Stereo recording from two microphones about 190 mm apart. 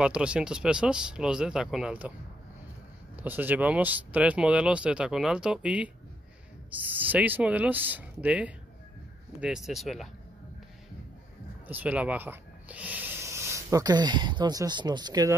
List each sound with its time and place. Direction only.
0.0 s speech: 5° right (ahead or behind)
3.2 s speech: 10° right (ahead or behind)
11.6 s speech: 10° right (ahead or behind)